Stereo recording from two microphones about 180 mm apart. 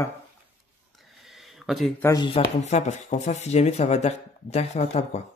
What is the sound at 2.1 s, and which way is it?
Speech, 30° left (ahead or behind).